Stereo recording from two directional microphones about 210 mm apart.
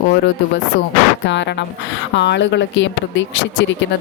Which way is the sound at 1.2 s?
60° left (ahead or behind).